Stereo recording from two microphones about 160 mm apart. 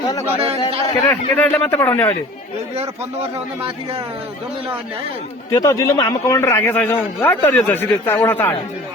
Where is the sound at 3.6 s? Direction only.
35° right (ahead or behind).